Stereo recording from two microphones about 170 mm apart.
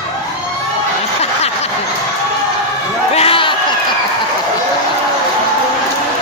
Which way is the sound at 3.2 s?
30° left (ahead or behind).